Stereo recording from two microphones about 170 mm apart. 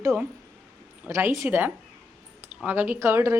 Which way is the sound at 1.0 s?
15° right (ahead or behind).